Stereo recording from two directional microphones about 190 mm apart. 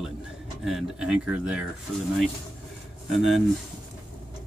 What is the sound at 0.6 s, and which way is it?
Speech, centre (ahead or behind).